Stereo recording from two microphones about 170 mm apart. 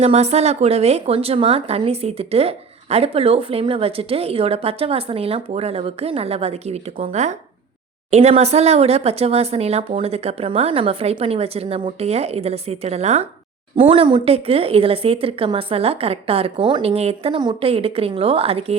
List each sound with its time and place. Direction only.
0.0 s a woman's voice: 40° right (ahead or behind)